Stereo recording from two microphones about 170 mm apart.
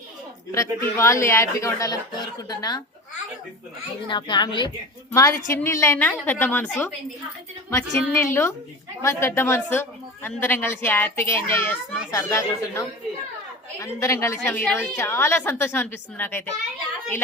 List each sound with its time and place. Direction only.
0.5 s a woman's voice: 15° left (ahead or behind)
4.1 s a woman's voice: 30° left (ahead or behind); by 6.9 s 10° left (ahead or behind)
7.9 s a woman's voice: 15° left (ahead or behind)